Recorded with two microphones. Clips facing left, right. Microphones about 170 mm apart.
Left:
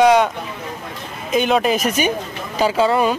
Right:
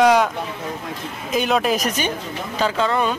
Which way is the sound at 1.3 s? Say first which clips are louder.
Left 3 dB; centre (ahead or behind).